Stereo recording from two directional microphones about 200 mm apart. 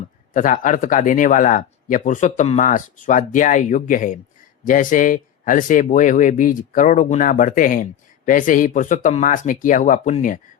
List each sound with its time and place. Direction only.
0.3 s speech: 40° left (ahead or behind)